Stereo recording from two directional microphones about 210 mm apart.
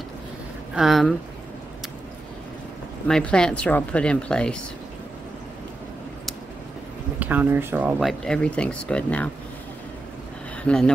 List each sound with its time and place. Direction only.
0.7 s speech: centre (ahead or behind)
3.1 s speech: 5° left (ahead or behind)
7.2 s speech: 10° right (ahead or behind)
10.6 s speech: 5° left (ahead or behind)